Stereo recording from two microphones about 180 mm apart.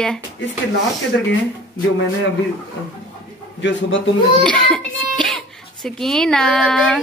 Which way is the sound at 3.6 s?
90° left.